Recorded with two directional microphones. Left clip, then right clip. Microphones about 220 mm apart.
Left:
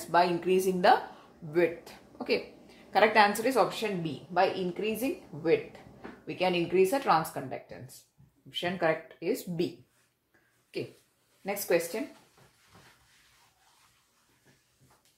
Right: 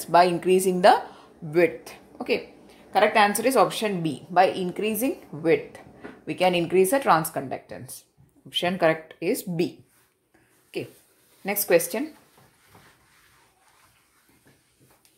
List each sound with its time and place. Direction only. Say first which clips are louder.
0.0 s a woman's voice: right 7 dB; 35° right (ahead or behind)
3.4 s a woman's voice: right 6 dB; 40° right (ahead or behind)
11.4 s a woman's voice: right 7 dB; 40° right (ahead or behind)